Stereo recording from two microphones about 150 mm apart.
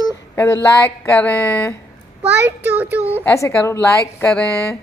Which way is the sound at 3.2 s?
20° left (ahead or behind).